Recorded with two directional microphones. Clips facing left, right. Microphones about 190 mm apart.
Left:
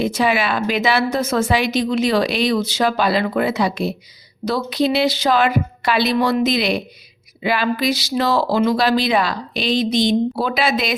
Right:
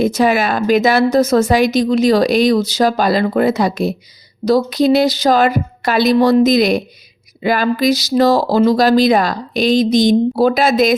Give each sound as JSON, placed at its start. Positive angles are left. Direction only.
{"t": 0.0, "sound": "a woman's voice", "side_deg": -45}